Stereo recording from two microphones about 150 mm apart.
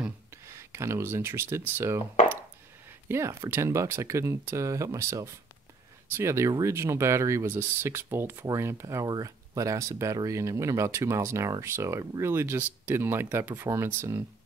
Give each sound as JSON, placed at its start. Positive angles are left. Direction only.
{"t": 0.5, "sound": "speech", "side_deg": -20}
{"t": 3.1, "sound": "speech", "side_deg": -20}